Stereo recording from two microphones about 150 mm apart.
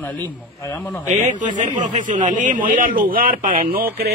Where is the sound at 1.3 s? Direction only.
60° right (ahead or behind); by 4.1 s 75° right (ahead or behind).